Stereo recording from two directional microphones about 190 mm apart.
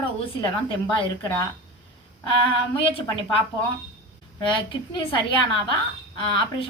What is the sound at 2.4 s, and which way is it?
Speech, 30° left (ahead or behind).